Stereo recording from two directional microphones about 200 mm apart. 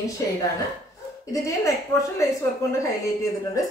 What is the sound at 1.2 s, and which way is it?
A woman's voice, 15° left (ahead or behind).